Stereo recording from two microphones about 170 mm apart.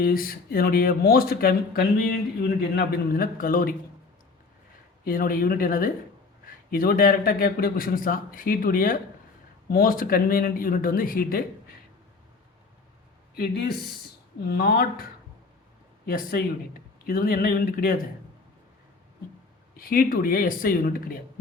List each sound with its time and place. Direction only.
0.0 s speech: 60° left (ahead or behind)
5.0 s speech: 55° left (ahead or behind)
13.3 s speech: 65° left (ahead or behind)
16.0 s speech: 60° left (ahead or behind)
19.7 s speech: 60° left (ahead or behind)